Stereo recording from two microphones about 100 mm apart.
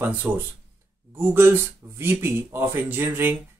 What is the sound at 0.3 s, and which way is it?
Speech, 20° right (ahead or behind).